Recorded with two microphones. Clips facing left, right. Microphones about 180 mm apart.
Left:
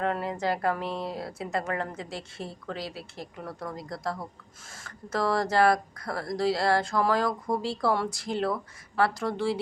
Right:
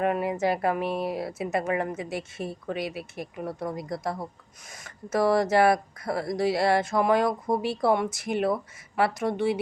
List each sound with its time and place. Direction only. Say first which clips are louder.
0.0 s speech: right 4 dB; 20° right (ahead or behind)